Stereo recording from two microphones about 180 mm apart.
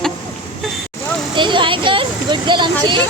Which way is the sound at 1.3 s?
25° right (ahead or behind).